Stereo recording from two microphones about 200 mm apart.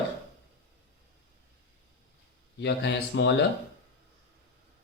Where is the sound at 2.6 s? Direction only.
60° left (ahead or behind).